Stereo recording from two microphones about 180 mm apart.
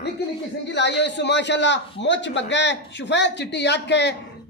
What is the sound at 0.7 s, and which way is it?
A man's voice, 75° left (ahead or behind).